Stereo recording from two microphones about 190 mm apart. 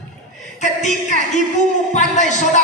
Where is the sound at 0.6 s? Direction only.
40° left (ahead or behind).